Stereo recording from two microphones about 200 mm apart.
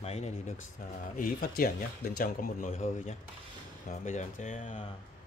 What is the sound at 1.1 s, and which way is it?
Speech, 45° left (ahead or behind).